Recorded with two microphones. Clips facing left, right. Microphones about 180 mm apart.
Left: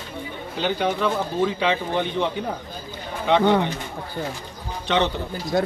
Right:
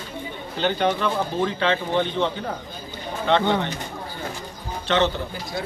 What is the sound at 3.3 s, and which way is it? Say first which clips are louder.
Speech: left 1 dB; 10° left (ahead or behind).